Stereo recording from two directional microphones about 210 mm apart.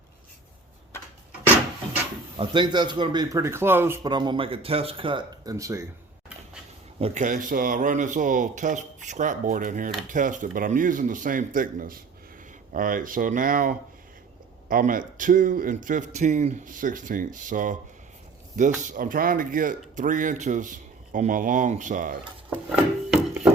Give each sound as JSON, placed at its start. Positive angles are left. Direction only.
{"t": 2.3, "sound": "a man's voice", "side_deg": -20}
{"t": 7.0, "sound": "speech", "side_deg": -35}
{"t": 22.7, "sound": "a sound", "side_deg": -10}